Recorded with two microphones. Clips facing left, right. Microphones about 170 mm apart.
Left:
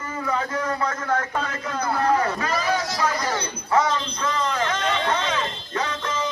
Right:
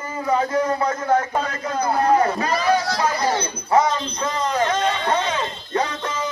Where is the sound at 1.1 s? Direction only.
15° right (ahead or behind).